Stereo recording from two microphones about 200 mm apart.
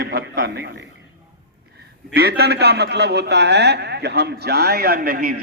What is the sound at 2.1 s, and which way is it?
A man's voice, 50° right (ahead or behind).